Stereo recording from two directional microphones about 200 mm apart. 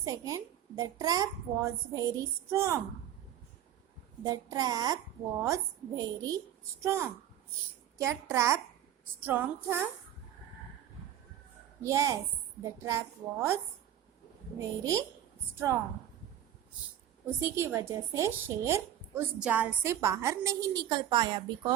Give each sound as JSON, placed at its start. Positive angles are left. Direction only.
{"t": 0.0, "sound": "a woman's voice", "side_deg": -15}
{"t": 4.2, "sound": "a woman's voice", "side_deg": -15}
{"t": 6.0, "sound": "a woman's voice", "side_deg": -20}
{"t": 11.8, "sound": "a woman's voice", "side_deg": -15}
{"t": 14.6, "sound": "a woman's voice", "side_deg": -15}
{"t": 17.4, "sound": "a woman's voice", "side_deg": -15}